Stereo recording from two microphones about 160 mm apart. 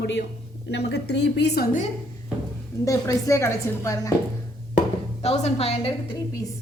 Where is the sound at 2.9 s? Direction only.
20° left (ahead or behind).